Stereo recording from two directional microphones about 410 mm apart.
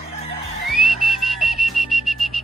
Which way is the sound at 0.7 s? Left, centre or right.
Centre.